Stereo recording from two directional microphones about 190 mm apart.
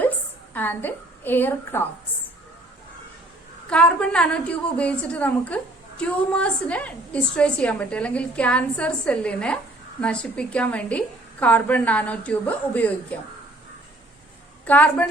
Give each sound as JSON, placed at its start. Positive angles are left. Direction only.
{"t": 0.5, "sound": "a woman's voice", "side_deg": 10}
{"t": 3.7, "sound": "a woman's voice", "side_deg": 5}
{"t": 14.6, "sound": "a woman's voice", "side_deg": 10}